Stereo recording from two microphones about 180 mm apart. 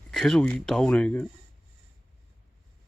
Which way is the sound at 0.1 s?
5° left (ahead or behind).